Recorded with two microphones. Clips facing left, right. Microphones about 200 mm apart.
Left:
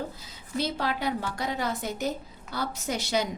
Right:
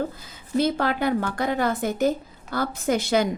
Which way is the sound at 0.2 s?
50° right (ahead or behind).